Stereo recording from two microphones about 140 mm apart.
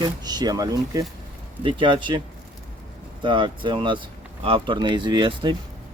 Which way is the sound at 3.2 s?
35° right (ahead or behind).